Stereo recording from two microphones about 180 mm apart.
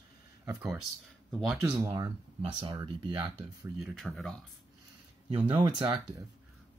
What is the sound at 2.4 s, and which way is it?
Speech, 30° right (ahead or behind).